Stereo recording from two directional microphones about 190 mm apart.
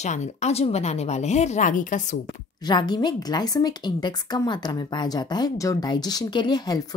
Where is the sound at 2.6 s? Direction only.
25° left (ahead or behind).